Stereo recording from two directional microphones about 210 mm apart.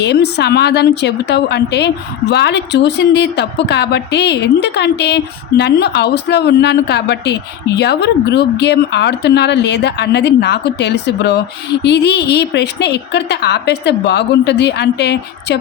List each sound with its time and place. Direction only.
0.3 s speech: 55° left (ahead or behind)